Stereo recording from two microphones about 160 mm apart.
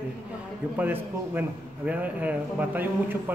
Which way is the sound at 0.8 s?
10° right (ahead or behind).